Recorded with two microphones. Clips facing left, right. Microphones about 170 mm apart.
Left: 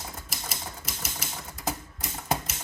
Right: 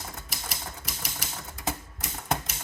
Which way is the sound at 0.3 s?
Centre (ahead or behind).